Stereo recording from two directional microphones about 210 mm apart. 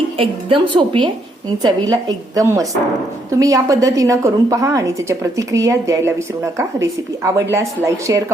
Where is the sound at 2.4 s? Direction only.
15° right (ahead or behind).